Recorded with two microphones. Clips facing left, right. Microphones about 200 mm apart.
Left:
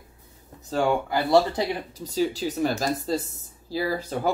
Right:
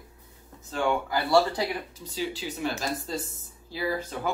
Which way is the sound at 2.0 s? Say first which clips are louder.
Left 8 dB; 40° left (ahead or behind).